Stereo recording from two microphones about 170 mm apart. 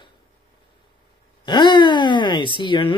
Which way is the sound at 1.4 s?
25° left (ahead or behind).